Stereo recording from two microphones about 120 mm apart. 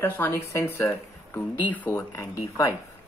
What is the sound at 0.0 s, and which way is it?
Speech, 20° left (ahead or behind).